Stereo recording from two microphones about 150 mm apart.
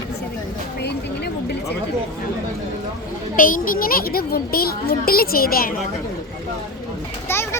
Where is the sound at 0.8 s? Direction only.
90° left.